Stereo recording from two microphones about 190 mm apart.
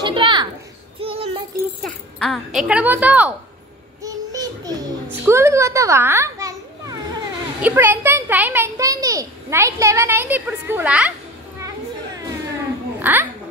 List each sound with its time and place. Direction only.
0.0 s a sound: 25° right (ahead or behind)
1.8 s speech: centre (ahead or behind)
4.0 s child singing: 20° right (ahead or behind)
5.2 s a child's voice: 15° right (ahead or behind)
13.0 s a child's voice: 10° right (ahead or behind)